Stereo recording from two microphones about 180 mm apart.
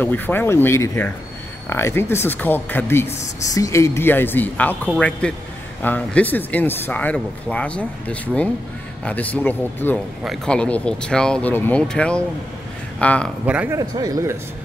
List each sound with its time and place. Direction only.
0.0 s speech: 10° left (ahead or behind)
13.5 s speech: 5° right (ahead or behind)
13.7 s speech: 20° right (ahead or behind)